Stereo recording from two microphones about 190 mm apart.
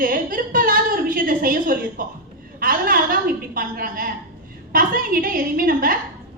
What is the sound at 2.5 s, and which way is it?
A woman's voice, 50° right (ahead or behind).